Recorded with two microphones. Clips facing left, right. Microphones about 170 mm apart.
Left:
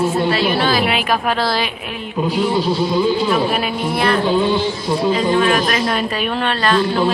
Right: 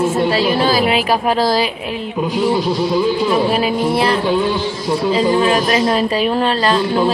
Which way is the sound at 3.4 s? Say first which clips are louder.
Right 4 dB; 30° right (ahead or behind).